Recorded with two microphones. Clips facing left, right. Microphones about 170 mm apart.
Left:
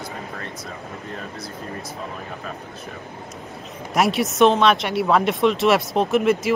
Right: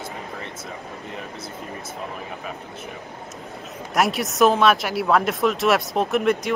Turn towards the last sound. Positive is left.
turn(degrees=0)  # may be behind; listen again after turning